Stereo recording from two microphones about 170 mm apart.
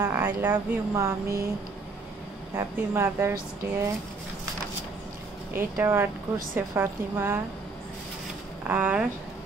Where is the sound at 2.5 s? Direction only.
15° right (ahead or behind).